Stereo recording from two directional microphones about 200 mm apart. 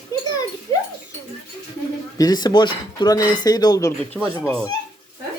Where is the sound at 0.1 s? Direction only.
15° left (ahead or behind).